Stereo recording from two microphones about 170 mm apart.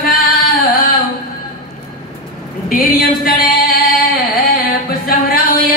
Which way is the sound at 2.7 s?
55° left (ahead or behind).